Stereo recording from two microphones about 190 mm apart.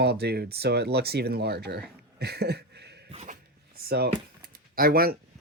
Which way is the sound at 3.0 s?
40° right (ahead or behind).